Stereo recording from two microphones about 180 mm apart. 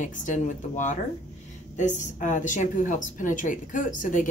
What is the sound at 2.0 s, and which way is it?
Speech, 45° left (ahead or behind).